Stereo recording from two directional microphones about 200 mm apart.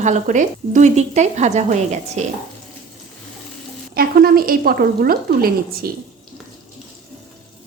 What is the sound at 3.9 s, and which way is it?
Speech, 50° right (ahead or behind).